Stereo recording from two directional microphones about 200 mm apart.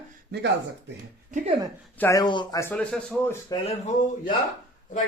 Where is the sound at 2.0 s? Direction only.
15° left (ahead or behind).